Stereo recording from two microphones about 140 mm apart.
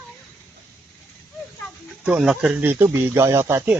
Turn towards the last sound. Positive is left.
turn(degrees=-15)  # may be behind; listen again after turning